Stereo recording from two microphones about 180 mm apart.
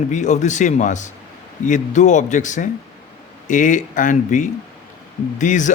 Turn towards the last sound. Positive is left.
turn(degrees=45)  # may be behind; listen again after turning